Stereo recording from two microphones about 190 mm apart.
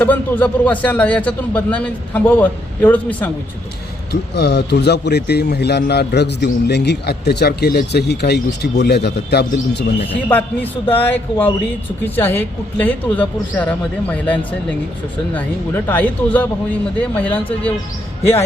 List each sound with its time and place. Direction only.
0.0 s a man's voice: 10° left (ahead or behind)
4.1 s speech: 60° left (ahead or behind)
10.2 s a man's voice: 10° left (ahead or behind)